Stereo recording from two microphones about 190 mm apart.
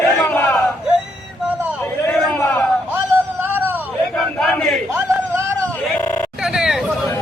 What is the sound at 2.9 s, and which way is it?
Music, 10° right (ahead or behind).